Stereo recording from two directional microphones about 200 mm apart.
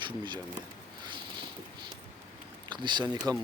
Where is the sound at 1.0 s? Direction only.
25° right (ahead or behind).